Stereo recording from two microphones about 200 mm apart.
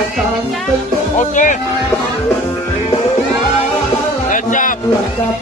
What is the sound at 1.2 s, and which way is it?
Music, 40° left (ahead or behind).